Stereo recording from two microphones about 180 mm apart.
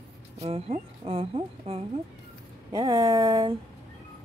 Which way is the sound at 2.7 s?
25° right (ahead or behind).